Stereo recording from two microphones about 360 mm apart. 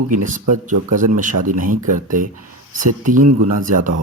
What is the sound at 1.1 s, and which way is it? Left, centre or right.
Speech, right.